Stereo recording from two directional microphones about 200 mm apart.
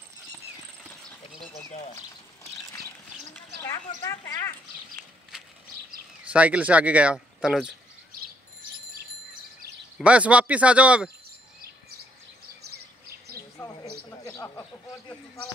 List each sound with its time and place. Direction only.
3.6 s speech: 15° left (ahead or behind)
6.3 s speech: 5° right (ahead or behind)
9.9 s speech: 5° right (ahead or behind)
14.2 s speech: 15° left (ahead or behind)